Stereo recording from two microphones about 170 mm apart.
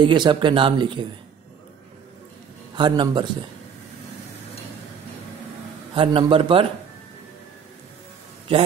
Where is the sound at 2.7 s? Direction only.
25° right (ahead or behind).